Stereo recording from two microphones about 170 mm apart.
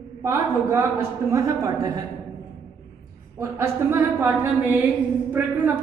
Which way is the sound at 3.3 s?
15° right (ahead or behind).